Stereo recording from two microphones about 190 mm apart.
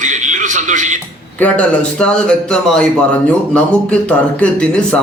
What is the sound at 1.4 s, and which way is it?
A man's voice, 5° left (ahead or behind).